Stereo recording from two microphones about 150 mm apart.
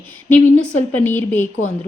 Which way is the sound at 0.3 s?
15° left (ahead or behind).